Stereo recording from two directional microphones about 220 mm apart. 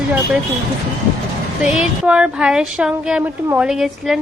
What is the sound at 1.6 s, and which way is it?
Speech, 5° right (ahead or behind).